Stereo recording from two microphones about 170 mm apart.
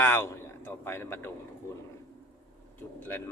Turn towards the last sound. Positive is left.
turn(degrees=15)  # may be behind; listen again after turning